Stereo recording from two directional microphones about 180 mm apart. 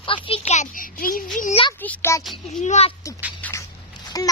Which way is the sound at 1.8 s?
10° left (ahead or behind).